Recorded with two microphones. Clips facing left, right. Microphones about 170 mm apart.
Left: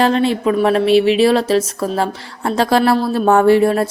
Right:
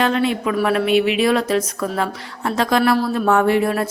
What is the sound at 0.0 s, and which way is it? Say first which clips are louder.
Speech: left 4 dB; 30° left (ahead or behind).